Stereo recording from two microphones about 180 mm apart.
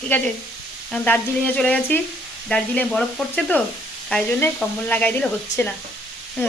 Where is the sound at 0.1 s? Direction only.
10° left (ahead or behind).